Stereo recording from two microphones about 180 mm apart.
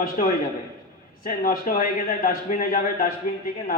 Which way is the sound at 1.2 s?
50° left (ahead or behind).